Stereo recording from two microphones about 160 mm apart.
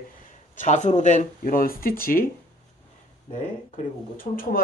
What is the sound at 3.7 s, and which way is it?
Speech, 60° left (ahead or behind).